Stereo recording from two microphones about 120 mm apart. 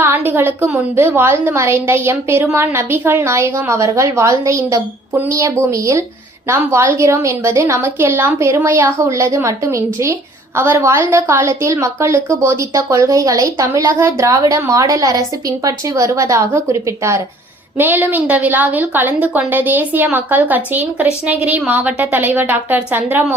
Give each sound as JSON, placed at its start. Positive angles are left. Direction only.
{"t": 0.0, "sound": "a woman's voice", "side_deg": -20}